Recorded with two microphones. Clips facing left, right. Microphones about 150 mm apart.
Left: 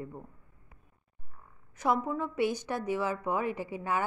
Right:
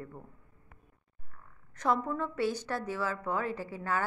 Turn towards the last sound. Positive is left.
turn(degrees=15)  # may be behind; listen again after turning